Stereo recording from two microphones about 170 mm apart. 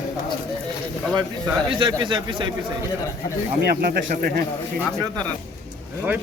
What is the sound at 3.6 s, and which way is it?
Speech, 65° right (ahead or behind).